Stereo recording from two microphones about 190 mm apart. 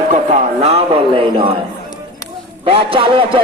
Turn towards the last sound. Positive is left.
turn(degrees=-25)  # may be behind; listen again after turning